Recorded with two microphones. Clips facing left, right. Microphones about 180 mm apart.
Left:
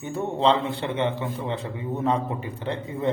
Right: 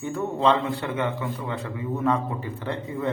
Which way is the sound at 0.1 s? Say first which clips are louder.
Even; 25° left (ahead or behind).